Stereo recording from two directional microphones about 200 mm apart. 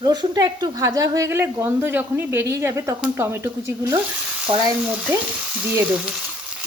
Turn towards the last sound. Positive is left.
turn(degrees=-10)  # may be behind; listen again after turning